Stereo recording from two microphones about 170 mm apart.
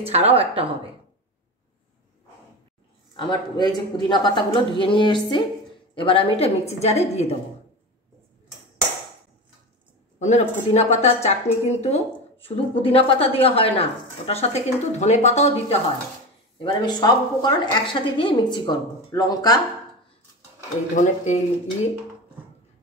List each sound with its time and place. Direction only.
0.0 s speech: 35° right (ahead or behind)
3.2 s a woman's voice: 25° left (ahead or behind)
10.1 s a woman's voice: 40° left (ahead or behind)
16.5 s a woman's voice: 25° left (ahead or behind)
20.9 s speech: 45° left (ahead or behind)